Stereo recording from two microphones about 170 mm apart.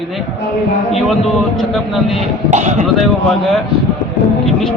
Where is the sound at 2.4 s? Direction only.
45° right (ahead or behind).